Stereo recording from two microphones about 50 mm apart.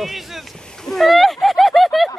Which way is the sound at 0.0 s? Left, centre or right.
Centre.